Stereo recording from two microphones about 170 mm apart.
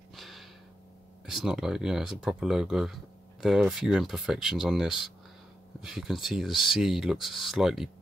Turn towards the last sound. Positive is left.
turn(degrees=0)  # may be behind; listen again after turning